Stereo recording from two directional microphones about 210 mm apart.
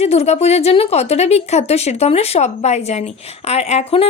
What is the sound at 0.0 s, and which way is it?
Speech, 30° left (ahead or behind).